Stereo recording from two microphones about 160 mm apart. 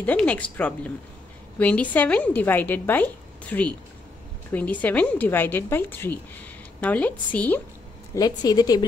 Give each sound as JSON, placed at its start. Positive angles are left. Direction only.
{"t": 0.0, "sound": "a woman's voice", "side_deg": 10}
{"t": 8.1, "sound": "speech", "side_deg": 25}